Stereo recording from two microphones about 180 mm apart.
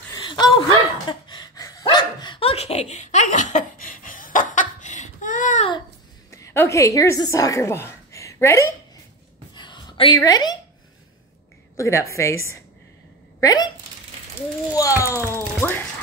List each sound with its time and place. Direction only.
0.1 s chuckle: 25° left (ahead or behind); by 5.7 s 45° left (ahead or behind)
6.3 s a woman's voice: 15° left (ahead or behind)
9.6 s a sound: 25° left (ahead or behind)
11.7 s a child's voice: 15° left (ahead or behind)
14.7 s a child's voice: 20° left (ahead or behind)